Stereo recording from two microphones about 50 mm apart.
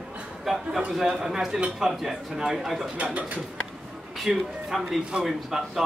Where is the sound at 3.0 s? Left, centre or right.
Right.